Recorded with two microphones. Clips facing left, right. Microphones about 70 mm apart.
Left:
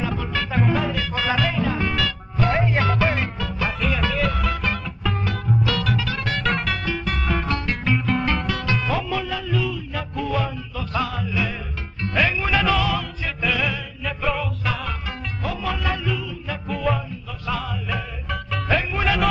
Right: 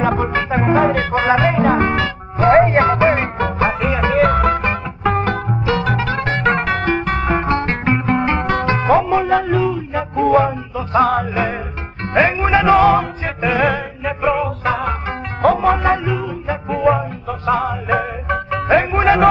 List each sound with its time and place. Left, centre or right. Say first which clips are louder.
0.0 s music: right 9 dB; right
3.3 s music: right 9 dB; right
4.2 s music: right 10 dB; right
5.7 s music: right 7 dB; right
8.2 s music: right 6 dB; right
8.5 s music: right 9 dB; right
11.1 s music: right 9 dB; right